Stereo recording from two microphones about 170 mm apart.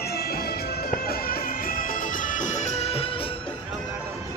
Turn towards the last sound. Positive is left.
turn(degrees=35)  # may be behind; listen again after turning